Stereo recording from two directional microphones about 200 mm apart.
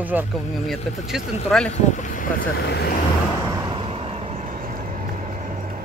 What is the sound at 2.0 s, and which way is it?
Speech, 45° left (ahead or behind).